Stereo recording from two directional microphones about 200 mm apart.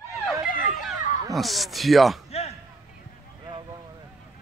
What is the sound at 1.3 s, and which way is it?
Speech, centre (ahead or behind).